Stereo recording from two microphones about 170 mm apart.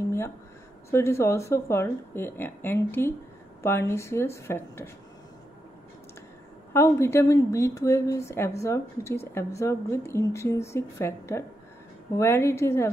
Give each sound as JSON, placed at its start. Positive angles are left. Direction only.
{"t": 0.8, "sound": "speech", "side_deg": 15}
{"t": 6.7, "sound": "speech", "side_deg": 15}